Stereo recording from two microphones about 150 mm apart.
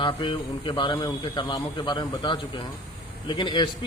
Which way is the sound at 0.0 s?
35° left (ahead or behind).